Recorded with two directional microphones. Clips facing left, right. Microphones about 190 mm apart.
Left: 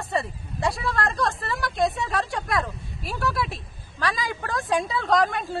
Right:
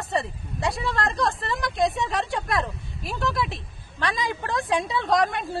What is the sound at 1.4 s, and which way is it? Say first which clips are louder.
Speech: right 1 dB; 20° right (ahead or behind).